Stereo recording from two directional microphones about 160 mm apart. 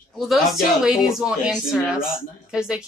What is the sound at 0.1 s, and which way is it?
A woman's voice, centre (ahead or behind).